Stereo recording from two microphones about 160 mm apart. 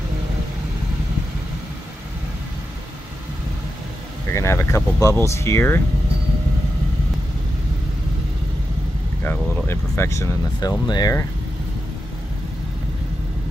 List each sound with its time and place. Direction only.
4.3 s speech: 15° left (ahead or behind)
9.2 s speech: 15° left (ahead or behind)